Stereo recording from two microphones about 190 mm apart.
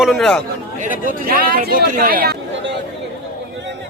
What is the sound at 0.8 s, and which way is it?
Speech, 45° right (ahead or behind).